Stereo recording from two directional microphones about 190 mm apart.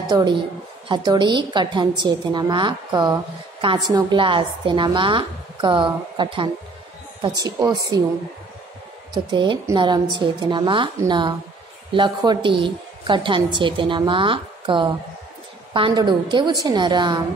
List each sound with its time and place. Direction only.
0.1 s a woman's voice: 25° right (ahead or behind)
9.1 s a woman's voice: 25° right (ahead or behind)